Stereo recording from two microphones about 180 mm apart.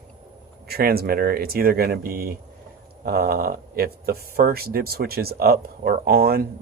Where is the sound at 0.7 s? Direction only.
60° right (ahead or behind).